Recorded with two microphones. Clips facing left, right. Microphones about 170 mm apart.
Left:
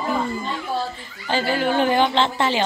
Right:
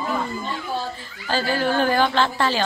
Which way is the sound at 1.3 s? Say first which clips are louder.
Left 1 dB; 20° left (ahead or behind).